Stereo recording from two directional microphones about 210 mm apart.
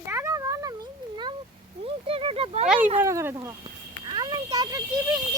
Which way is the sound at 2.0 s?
25° right (ahead or behind).